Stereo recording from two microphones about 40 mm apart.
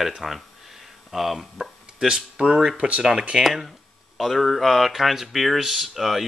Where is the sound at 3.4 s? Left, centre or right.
Centre.